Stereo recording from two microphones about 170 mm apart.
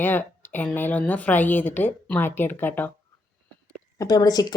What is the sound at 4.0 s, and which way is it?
Speech, 20° left (ahead or behind).